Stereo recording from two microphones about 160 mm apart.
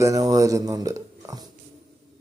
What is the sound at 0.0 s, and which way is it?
Speech, 20° right (ahead or behind).